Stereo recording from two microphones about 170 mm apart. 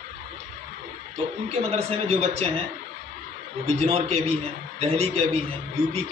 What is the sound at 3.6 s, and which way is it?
A man's voice, 40° right (ahead or behind).